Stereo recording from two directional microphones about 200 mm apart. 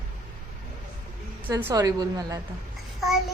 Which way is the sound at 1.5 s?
15° right (ahead or behind).